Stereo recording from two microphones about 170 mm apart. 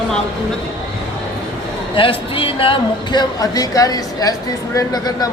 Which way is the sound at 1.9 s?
30° left (ahead or behind).